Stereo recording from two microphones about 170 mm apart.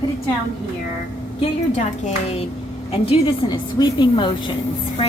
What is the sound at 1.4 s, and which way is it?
A woman's voice, 40° left (ahead or behind).